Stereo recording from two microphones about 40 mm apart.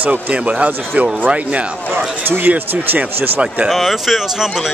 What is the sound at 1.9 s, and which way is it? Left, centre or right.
Speech, right.